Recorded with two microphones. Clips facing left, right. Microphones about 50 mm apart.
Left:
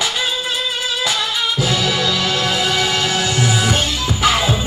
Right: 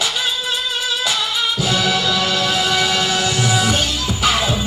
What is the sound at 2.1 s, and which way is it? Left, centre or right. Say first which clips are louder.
Music: even; left.